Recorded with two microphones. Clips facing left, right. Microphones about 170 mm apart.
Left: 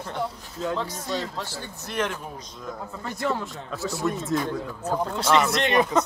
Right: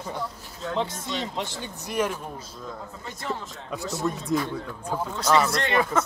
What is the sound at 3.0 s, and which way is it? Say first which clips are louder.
Speech: left 6 dB; 65° left (ahead or behind).